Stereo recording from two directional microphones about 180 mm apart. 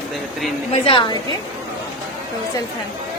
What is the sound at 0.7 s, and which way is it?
Speech, 30° left (ahead or behind).